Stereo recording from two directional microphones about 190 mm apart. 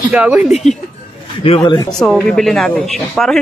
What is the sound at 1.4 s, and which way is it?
Speech, 25° left (ahead or behind).